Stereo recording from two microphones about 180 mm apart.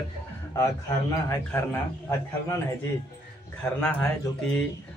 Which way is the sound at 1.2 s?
15° left (ahead or behind).